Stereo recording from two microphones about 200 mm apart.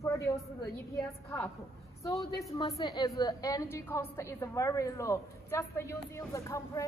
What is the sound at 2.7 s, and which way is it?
A woman's voice, 20° left (ahead or behind).